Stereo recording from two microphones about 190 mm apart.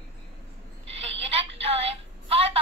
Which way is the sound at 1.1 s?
30° right (ahead or behind).